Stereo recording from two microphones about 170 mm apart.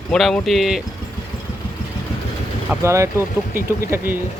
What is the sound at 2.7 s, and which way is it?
Speech, 15° right (ahead or behind).